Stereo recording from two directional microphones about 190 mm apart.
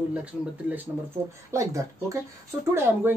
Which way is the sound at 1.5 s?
15° right (ahead or behind).